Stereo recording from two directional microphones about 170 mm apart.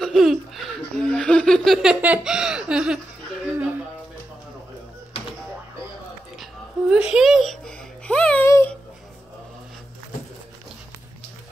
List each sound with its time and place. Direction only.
0.0 s speech: centre (ahead or behind)
6.9 s music: 5° right (ahead or behind)
8.5 s a sound: 15° left (ahead or behind)